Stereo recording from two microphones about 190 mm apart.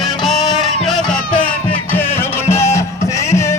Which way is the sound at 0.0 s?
Centre (ahead or behind).